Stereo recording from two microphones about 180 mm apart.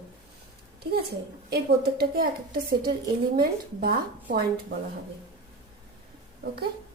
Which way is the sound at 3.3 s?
55° right (ahead or behind).